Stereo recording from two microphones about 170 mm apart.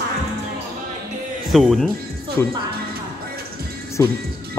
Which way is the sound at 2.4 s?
15° left (ahead or behind).